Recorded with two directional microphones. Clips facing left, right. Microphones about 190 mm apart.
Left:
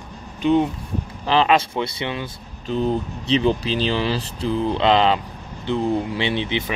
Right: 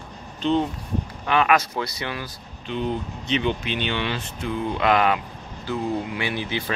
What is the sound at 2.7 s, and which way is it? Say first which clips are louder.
Speech: left 5 dB; 35° left (ahead or behind).